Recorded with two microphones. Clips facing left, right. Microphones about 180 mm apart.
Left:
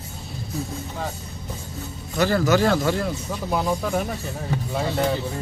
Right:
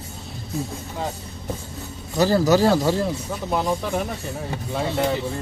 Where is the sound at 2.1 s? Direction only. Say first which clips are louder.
Right 2 dB; 35° right (ahead or behind).